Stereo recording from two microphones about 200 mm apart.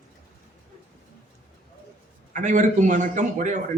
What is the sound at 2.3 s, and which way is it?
A woman's voice, 35° right (ahead or behind).